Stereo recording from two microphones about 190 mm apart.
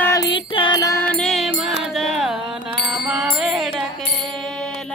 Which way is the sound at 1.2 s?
Centre (ahead or behind).